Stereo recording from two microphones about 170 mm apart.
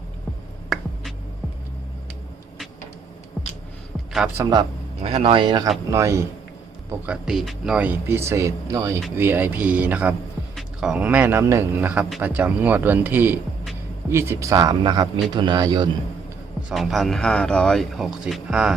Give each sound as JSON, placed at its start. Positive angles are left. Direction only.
{"t": 4.4, "sound": "speech", "side_deg": -25}
{"t": 5.9, "sound": "speech", "side_deg": -15}
{"t": 7.0, "sound": "speech", "side_deg": -5}
{"t": 16.6, "sound": "speech", "side_deg": 0}